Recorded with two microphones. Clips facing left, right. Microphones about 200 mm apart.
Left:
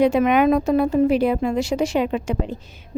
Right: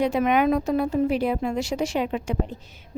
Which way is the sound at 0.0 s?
90° left.